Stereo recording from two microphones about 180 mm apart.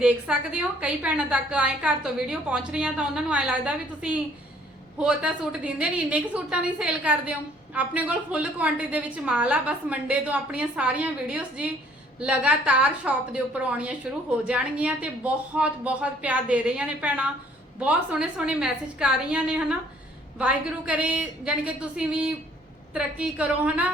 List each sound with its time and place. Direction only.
0.0 s a woman's voice: 5° right (ahead or behind)